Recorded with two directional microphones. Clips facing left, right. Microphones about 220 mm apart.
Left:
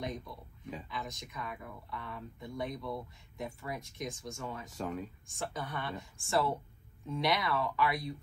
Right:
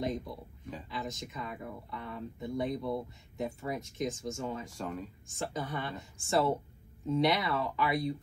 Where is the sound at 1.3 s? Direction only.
25° right (ahead or behind).